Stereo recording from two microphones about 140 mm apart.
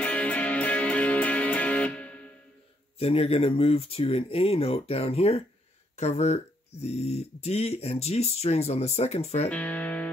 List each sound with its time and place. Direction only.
0.0 s music: 10° left (ahead or behind)
3.0 s speech: 45° left (ahead or behind)
9.5 s speech: 10° left (ahead or behind)